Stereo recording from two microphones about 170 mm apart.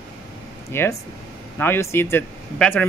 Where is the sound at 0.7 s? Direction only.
15° left (ahead or behind).